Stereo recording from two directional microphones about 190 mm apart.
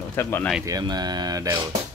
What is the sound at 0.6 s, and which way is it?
Speech, 20° right (ahead or behind).